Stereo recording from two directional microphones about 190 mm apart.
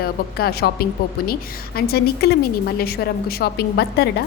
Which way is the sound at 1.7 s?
55° left (ahead or behind).